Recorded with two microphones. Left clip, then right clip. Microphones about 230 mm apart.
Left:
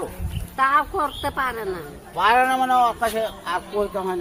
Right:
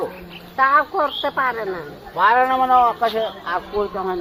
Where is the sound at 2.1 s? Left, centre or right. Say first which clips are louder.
Right 2 dB; left.